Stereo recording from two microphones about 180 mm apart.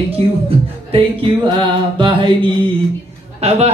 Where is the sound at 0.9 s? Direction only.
30° right (ahead or behind).